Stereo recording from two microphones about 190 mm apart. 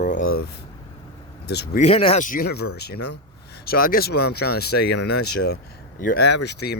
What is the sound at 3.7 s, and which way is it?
Speech, 50° left (ahead or behind).